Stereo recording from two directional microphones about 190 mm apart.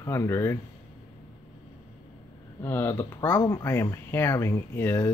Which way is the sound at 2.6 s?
10° left (ahead or behind).